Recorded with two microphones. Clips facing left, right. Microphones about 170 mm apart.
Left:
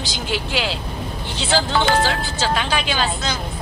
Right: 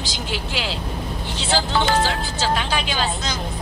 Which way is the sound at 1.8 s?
65° left (ahead or behind).